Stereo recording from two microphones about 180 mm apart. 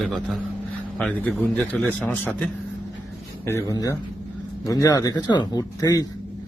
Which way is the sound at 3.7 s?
20° left (ahead or behind).